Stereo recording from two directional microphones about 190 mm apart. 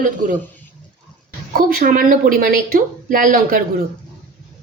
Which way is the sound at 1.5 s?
50° right (ahead or behind).